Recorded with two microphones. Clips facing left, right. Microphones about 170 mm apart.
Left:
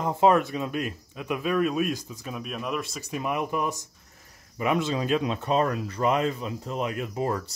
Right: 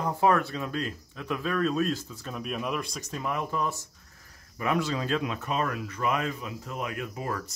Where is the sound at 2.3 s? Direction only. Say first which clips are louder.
Even; centre (ahead or behind).